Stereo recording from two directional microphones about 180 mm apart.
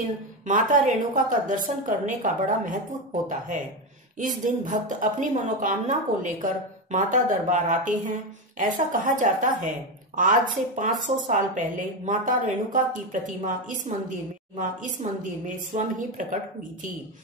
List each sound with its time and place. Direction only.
0.0 s a woman's voice: 45° right (ahead or behind)
4.6 s a woman's voice: 45° right (ahead or behind)